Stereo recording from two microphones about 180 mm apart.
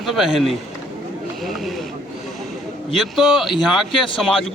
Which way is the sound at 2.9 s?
Centre (ahead or behind).